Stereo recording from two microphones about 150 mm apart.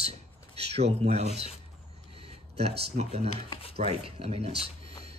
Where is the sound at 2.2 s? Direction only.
40° right (ahead or behind).